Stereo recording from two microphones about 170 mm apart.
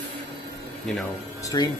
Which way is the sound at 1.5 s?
25° left (ahead or behind).